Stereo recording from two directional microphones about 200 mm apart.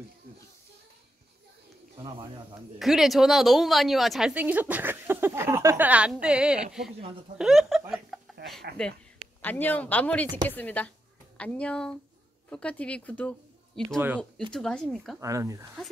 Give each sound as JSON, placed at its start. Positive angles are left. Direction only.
{"t": 2.0, "sound": "speech", "side_deg": -25}
{"t": 2.8, "sound": "a woman's voice", "side_deg": 0}
{"t": 8.1, "sound": "a sound", "side_deg": 0}
{"t": 8.8, "sound": "a woman's voice", "side_deg": 5}
{"t": 13.9, "sound": "a woman's voice", "side_deg": -10}
{"t": 14.5, "sound": "speech", "side_deg": 5}
{"t": 15.1, "sound": "a woman's voice", "side_deg": -15}